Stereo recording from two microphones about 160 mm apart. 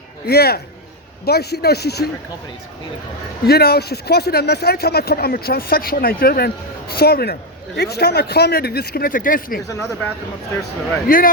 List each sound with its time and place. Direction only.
0.3 s speech: 80° left
3.4 s speech: 80° left; by 9.6 s 60° left (ahead or behind)
11.1 s speech: 60° left (ahead or behind)